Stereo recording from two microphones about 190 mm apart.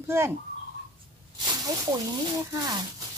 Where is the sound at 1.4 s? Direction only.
20° right (ahead or behind).